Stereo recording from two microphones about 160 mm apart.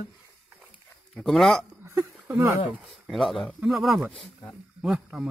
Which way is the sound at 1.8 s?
15° right (ahead or behind).